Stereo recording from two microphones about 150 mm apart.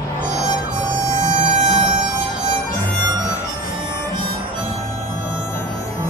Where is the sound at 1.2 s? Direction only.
55° right (ahead or behind).